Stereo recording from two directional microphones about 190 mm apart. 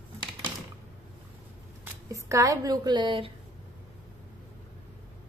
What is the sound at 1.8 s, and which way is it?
Speech, 15° right (ahead or behind).